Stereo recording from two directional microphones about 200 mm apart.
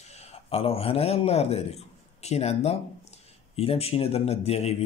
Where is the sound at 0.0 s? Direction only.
35° left (ahead or behind).